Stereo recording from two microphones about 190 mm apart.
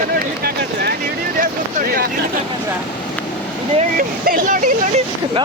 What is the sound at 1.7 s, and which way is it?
Speech, 50° right (ahead or behind).